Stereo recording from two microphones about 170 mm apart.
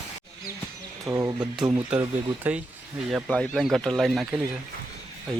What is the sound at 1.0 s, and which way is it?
Speech, 20° right (ahead or behind).